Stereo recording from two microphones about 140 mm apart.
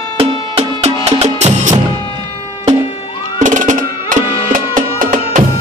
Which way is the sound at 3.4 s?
65° right (ahead or behind).